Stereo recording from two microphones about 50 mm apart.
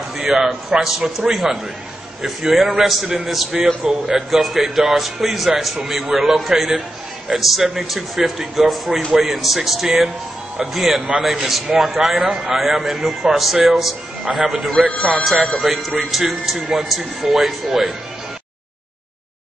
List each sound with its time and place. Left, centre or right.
0.2 s a man's voice: centre
14.9 s speech: centre
15.2 s a man's voice: centre